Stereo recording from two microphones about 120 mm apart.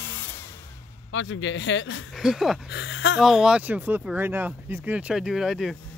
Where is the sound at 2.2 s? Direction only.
5° right (ahead or behind).